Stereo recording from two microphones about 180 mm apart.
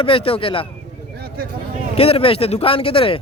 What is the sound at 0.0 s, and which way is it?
Speech, 30° left (ahead or behind).